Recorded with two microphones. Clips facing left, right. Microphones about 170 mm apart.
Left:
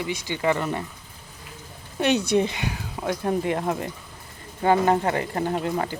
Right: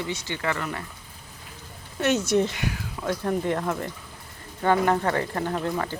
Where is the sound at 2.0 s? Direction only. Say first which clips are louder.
Left 1 dB; 15° left (ahead or behind).